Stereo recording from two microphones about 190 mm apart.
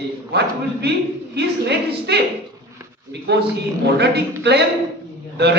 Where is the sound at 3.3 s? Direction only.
60° right (ahead or behind).